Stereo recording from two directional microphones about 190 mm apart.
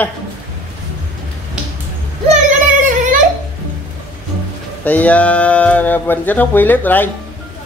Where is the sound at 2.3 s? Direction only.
45° right (ahead or behind).